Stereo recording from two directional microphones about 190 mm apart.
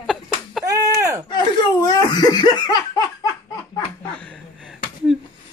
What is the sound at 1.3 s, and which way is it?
Laughter, 20° left (ahead or behind).